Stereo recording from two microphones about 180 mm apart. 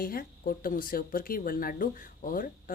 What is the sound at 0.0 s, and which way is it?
Speech, 55° left (ahead or behind).